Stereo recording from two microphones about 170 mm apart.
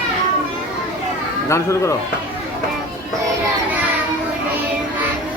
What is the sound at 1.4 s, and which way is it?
Speech, 15° left (ahead or behind).